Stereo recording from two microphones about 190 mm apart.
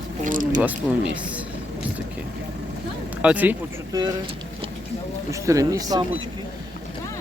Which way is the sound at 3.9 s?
20° right (ahead or behind).